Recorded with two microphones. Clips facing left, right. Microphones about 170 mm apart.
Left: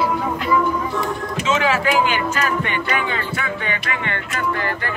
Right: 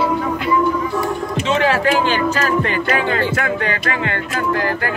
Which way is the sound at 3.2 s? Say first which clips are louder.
Right 7 dB; 75° right (ahead or behind).